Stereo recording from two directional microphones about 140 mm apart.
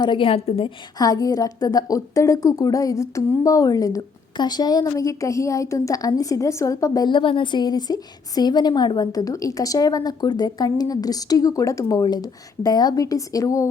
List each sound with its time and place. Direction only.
0.0 s a woman's voice: 35° left (ahead or behind)
0.9 s a woman's voice: 25° left (ahead or behind)